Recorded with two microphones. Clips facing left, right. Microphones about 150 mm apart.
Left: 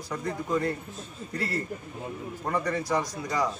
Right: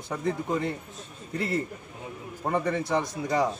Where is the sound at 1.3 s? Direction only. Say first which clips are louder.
Right 3 dB; 20° right (ahead or behind).